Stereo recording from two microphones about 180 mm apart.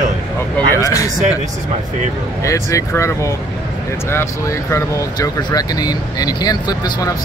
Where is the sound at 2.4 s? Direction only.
15° left (ahead or behind).